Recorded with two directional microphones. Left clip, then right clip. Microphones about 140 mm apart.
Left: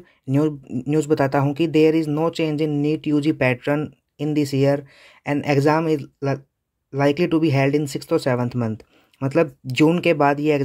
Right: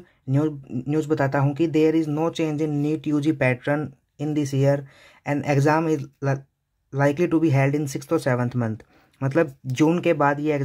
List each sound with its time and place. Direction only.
0.0 s speech: 35° left (ahead or behind)